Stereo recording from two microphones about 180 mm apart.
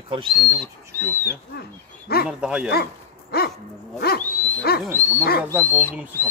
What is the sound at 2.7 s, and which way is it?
Speech, 60° left (ahead or behind).